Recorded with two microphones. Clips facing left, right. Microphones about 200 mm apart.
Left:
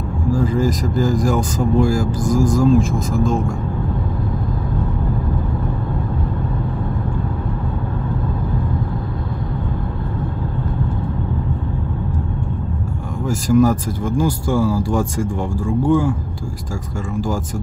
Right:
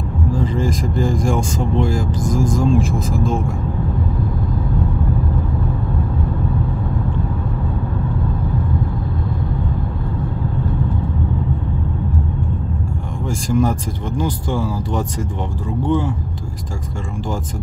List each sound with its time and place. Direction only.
0.3 s speech: 5° left (ahead or behind)
2.2 s speech: 25° right (ahead or behind)
2.5 s speech: 5° left (ahead or behind)
13.5 s speech: 5° left (ahead or behind)